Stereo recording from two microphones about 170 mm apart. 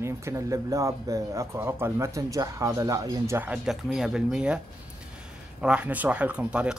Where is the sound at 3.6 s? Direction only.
Centre (ahead or behind).